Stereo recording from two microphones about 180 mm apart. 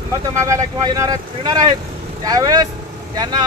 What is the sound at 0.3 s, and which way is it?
Speech, 15° right (ahead or behind).